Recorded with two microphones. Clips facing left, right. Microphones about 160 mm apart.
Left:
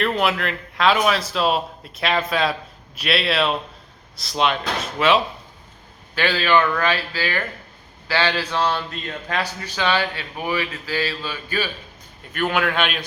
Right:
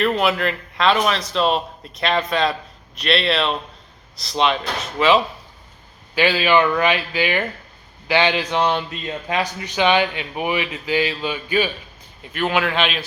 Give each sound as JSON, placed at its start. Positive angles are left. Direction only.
{"t": 0.0, "sound": "a man's voice", "side_deg": 0}
{"t": 6.1, "sound": "a man's voice", "side_deg": -15}
{"t": 12.3, "sound": "a man's voice", "side_deg": -5}